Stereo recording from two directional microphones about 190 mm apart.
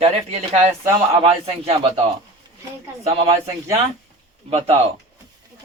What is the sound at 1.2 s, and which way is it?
Speech, 30° right (ahead or behind).